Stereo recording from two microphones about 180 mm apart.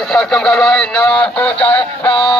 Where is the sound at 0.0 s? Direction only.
5° left (ahead or behind).